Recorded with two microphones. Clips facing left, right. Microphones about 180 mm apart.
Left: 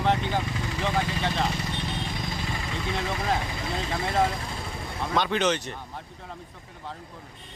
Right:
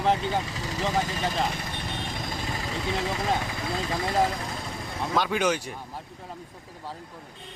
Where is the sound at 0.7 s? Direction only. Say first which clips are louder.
Right 2 dB; 40° right (ahead or behind).